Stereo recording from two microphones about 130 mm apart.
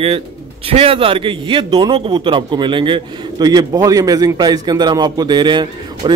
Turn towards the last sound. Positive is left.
turn(degrees=-35)  # may be behind; listen again after turning